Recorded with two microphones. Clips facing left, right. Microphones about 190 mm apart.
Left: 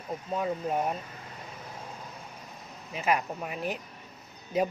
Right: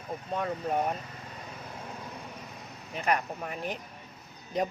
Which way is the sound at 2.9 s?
5° left (ahead or behind).